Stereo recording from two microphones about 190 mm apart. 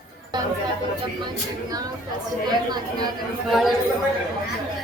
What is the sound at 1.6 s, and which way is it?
Speech, 20° right (ahead or behind).